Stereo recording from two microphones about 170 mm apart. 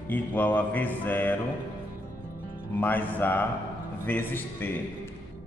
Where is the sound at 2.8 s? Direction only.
10° left (ahead or behind).